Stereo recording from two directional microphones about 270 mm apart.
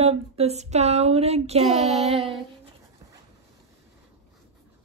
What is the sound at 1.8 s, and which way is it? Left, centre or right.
Speech, centre.